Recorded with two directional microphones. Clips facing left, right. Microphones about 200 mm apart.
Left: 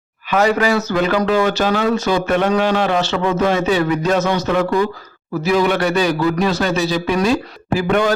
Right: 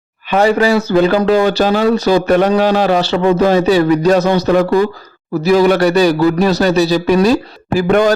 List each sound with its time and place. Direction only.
0.3 s speech: 30° right (ahead or behind)